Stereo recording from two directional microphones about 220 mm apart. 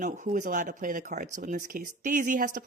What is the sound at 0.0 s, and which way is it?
Speech, 35° right (ahead or behind).